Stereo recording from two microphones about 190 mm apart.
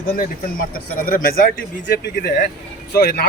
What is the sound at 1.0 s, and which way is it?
Speech, 50° left (ahead or behind).